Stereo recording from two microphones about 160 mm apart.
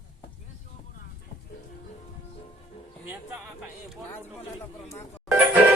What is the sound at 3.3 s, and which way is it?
Music, 10° right (ahead or behind).